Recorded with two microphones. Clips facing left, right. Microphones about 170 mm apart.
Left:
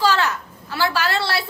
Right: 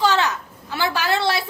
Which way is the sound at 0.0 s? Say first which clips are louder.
Even; 20° right (ahead or behind).